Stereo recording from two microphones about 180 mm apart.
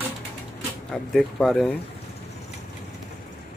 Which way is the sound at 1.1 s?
Centre (ahead or behind).